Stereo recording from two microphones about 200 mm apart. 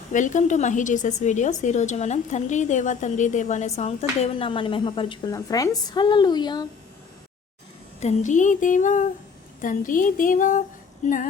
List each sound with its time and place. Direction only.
0.1 s a woman's voice: 40° left (ahead or behind); by 6.7 s 20° left (ahead or behind)
8.0 s a woman's voice: 40° left (ahead or behind)
9.6 s a sound: 40° left (ahead or behind)
11.0 s a woman's voice: 40° left (ahead or behind)